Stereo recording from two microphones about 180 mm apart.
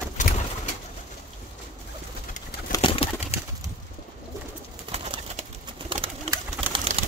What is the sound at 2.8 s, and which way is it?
Bird, 35° left (ahead or behind).